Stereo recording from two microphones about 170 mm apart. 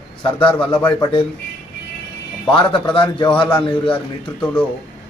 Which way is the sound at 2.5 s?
30° left (ahead or behind).